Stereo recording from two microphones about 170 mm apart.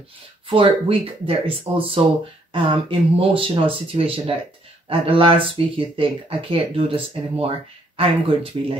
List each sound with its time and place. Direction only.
0.5 s speech: 30° right (ahead or behind)